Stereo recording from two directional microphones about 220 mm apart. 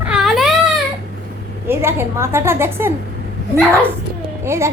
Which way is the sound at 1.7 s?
10° right (ahead or behind).